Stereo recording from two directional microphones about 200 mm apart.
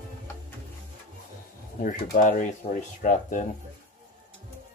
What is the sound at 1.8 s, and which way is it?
Speech, 45° left (ahead or behind).